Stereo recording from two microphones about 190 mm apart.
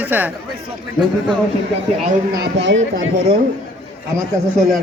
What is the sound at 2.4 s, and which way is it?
Speech, 70° right (ahead or behind).